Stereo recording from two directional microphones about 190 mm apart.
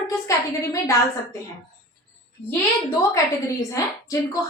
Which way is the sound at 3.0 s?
15° left (ahead or behind).